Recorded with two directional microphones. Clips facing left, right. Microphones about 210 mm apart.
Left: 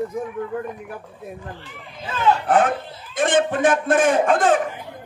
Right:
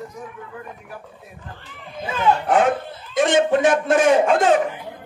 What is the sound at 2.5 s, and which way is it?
A man's voice, 50° left (ahead or behind).